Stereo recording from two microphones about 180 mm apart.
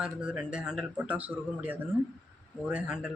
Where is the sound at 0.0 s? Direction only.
5° right (ahead or behind).